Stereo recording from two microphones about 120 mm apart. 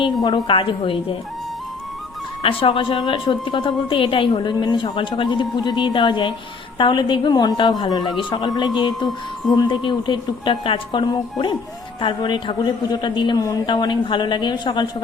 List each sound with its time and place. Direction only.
0.0 s a woman's voice: 40° left (ahead or behind)
2.4 s a woman's voice: 50° left (ahead or behind)